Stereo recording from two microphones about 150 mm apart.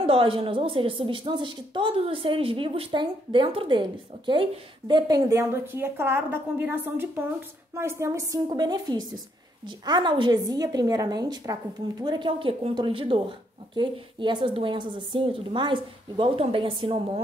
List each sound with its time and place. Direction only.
0.0 s a woman's voice: 35° right (ahead or behind)